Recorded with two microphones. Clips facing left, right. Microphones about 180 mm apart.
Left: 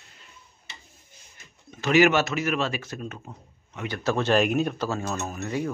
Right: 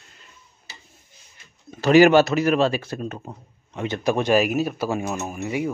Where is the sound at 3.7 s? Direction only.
25° right (ahead or behind).